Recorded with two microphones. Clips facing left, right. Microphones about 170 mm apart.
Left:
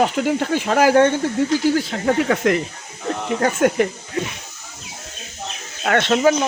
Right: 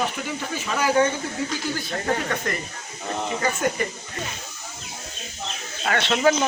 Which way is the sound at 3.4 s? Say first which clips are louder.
Left 9 dB; 65° left (ahead or behind).